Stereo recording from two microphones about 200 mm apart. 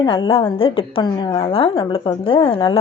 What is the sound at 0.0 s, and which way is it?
A woman's voice, 25° left (ahead or behind).